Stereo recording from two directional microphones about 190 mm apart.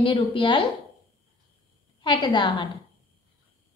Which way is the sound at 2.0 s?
25° left (ahead or behind).